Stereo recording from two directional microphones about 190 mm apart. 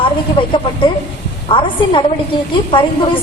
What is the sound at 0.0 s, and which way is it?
A woman's voice, 25° left (ahead or behind).